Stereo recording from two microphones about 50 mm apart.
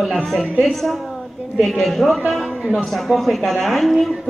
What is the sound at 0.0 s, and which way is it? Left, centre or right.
A woman's voice, centre.